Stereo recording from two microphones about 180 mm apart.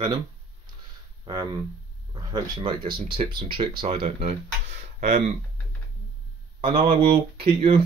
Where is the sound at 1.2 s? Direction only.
25° right (ahead or behind).